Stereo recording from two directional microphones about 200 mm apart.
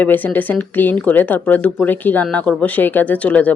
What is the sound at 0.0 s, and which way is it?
Speech, 10° left (ahead or behind).